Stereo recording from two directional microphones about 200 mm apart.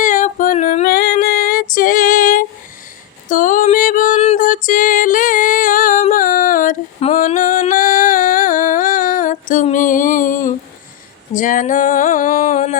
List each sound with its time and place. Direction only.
0.0 s female singing: 40° left (ahead or behind)
3.2 s music: 40° left (ahead or behind)